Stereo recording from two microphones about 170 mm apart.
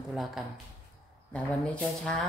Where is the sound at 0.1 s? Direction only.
Centre (ahead or behind).